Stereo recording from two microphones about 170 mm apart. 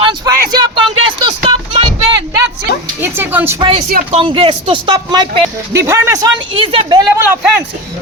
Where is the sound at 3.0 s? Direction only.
10° right (ahead or behind).